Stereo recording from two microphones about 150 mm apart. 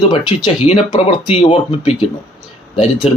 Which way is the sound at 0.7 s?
40° left (ahead or behind).